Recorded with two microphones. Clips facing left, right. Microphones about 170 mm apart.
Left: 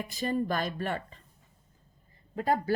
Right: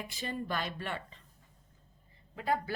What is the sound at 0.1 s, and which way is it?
Speech, 40° left (ahead or behind).